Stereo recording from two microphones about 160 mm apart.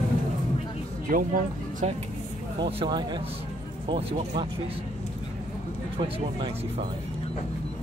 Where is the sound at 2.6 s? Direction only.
35° right (ahead or behind).